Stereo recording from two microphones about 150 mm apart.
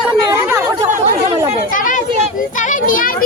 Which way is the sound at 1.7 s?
65° left (ahead or behind).